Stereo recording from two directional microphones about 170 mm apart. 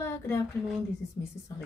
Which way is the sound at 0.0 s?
15° left (ahead or behind).